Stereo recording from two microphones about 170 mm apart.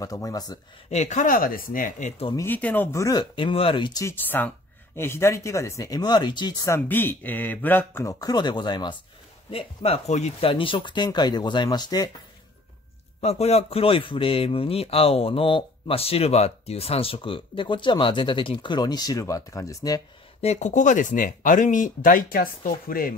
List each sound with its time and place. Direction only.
0.0 s speech: 20° left (ahead or behind)
0.8 s speech: 40° left (ahead or behind)
2.3 s speech: 10° left (ahead or behind)
13.2 s a man's voice: 40° left (ahead or behind); by 20.0 s 20° left (ahead or behind)
20.4 s speech: 45° left (ahead or behind)